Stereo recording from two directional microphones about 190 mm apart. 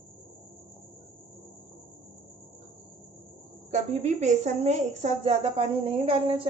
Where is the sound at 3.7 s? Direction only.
35° right (ahead or behind).